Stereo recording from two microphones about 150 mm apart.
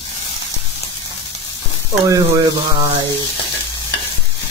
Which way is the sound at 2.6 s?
30° right (ahead or behind).